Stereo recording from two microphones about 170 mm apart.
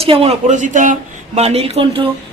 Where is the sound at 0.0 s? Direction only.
35° right (ahead or behind).